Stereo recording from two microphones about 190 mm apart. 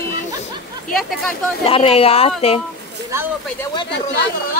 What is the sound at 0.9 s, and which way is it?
Speech, centre (ahead or behind).